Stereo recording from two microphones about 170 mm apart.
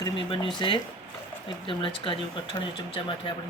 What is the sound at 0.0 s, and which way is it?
Speech, 30° left (ahead or behind).